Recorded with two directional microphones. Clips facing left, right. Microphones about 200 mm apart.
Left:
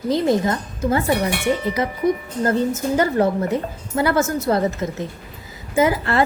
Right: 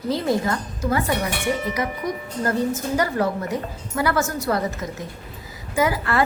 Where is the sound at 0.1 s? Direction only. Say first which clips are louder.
Left 4 dB; 20° left (ahead or behind).